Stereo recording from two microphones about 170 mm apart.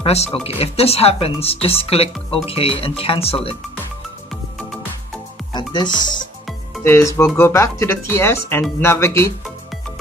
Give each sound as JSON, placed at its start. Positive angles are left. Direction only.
{"t": 0.0, "sound": "speech", "side_deg": 35}
{"t": 5.5, "sound": "speech", "side_deg": 25}
{"t": 6.8, "sound": "speech", "side_deg": 15}